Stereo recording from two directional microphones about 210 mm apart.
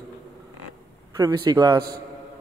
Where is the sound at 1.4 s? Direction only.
20° right (ahead or behind).